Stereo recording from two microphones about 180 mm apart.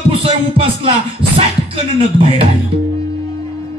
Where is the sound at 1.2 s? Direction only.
30° right (ahead or behind).